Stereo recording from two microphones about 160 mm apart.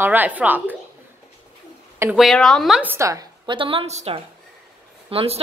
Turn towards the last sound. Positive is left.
turn(degrees=-35)  # may be behind; listen again after turning